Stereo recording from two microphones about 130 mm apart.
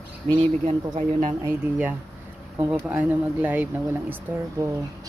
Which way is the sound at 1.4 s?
15° right (ahead or behind).